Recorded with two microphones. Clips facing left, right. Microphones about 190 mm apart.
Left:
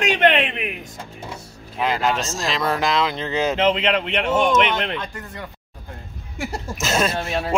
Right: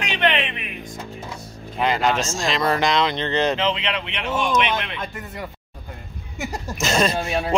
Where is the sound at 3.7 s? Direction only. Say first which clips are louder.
Left 6 dB; 45° left (ahead or behind).